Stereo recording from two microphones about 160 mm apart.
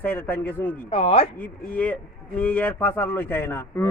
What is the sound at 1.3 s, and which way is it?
A man's voice, 10° left (ahead or behind).